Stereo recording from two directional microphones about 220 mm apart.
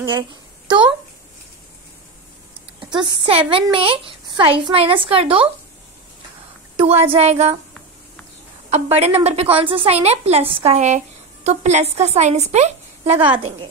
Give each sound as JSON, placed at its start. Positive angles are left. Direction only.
{"t": 0.7, "sound": "speech", "side_deg": -20}
{"t": 2.8, "sound": "a sound", "side_deg": -20}
{"t": 3.3, "sound": "a woman's voice", "side_deg": -25}
{"t": 7.1, "sound": "a woman's voice", "side_deg": -30}
{"t": 8.6, "sound": "a woman's voice", "side_deg": -30}